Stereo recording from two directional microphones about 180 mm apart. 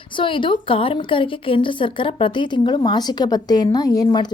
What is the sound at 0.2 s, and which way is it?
A woman's voice, 30° left (ahead or behind).